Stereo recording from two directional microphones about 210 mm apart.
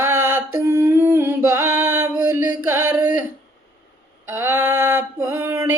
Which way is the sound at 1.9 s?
10° right (ahead or behind).